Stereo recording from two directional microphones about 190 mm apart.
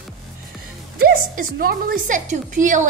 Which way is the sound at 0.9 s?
50° right (ahead or behind).